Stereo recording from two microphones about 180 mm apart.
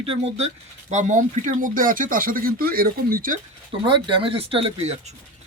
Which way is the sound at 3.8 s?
25° right (ahead or behind).